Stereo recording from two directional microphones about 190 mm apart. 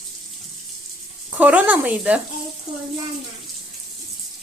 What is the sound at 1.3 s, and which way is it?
Speech, 5° right (ahead or behind).